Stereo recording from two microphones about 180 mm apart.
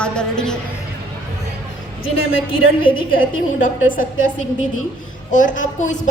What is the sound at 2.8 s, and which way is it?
Speech, 30° left (ahead or behind).